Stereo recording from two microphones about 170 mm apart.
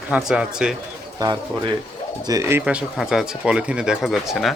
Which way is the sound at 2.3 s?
15° right (ahead or behind).